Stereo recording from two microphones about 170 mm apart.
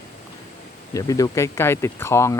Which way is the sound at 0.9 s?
20° left (ahead or behind).